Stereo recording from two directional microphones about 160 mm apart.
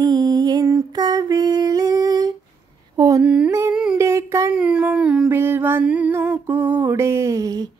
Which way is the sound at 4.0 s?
15° right (ahead or behind).